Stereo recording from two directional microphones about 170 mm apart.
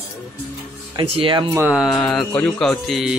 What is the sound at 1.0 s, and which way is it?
Speech, 30° right (ahead or behind).